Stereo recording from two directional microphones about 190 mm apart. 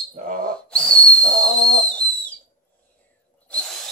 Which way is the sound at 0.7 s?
5° left (ahead or behind).